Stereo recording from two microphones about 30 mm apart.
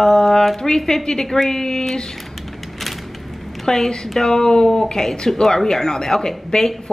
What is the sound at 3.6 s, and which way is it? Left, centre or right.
A woman's voice, left.